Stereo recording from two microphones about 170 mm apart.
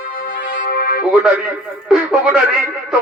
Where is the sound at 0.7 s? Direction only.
60° left (ahead or behind).